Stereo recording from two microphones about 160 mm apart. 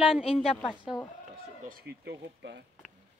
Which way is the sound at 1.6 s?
90° right.